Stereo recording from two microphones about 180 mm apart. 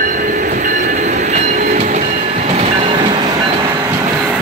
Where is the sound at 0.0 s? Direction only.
50° right (ahead or behind); by 3.3 s 30° right (ahead or behind).